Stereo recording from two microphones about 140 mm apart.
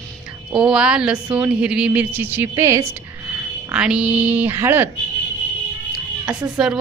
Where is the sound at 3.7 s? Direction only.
5° right (ahead or behind).